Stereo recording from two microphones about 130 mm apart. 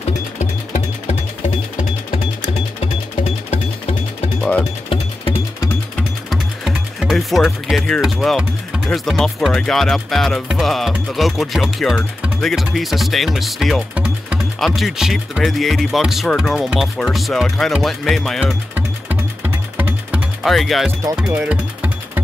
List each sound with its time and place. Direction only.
0.4 s music: 65° left (ahead or behind)
4.4 s music: 10° left (ahead or behind)
6.3 s speech: 5° right (ahead or behind)
18.8 s music: 15° right (ahead or behind)
20.4 s speech: centre (ahead or behind)
21.3 s music: 10° right (ahead or behind)